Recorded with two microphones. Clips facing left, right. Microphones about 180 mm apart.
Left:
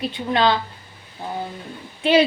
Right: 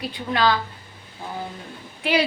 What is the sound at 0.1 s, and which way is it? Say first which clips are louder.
Speech: left 1 dB; 25° left (ahead or behind).